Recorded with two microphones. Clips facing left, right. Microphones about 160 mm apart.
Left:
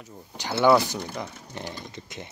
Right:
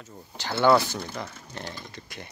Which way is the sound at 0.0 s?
15° left (ahead or behind).